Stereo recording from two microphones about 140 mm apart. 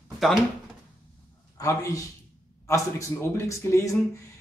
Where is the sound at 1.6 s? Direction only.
25° left (ahead or behind).